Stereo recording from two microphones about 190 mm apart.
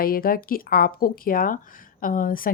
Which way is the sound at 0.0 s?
50° left (ahead or behind).